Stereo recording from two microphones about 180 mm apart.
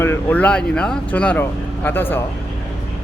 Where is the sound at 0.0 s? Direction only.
10° left (ahead or behind).